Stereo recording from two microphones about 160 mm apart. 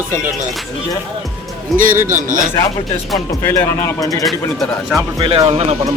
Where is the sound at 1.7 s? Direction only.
Centre (ahead or behind).